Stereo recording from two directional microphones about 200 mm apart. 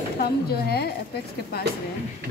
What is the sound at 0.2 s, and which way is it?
Speech, 50° left (ahead or behind).